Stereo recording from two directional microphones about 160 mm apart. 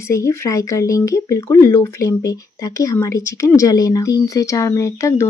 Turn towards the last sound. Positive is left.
turn(degrees=20)  # may be behind; listen again after turning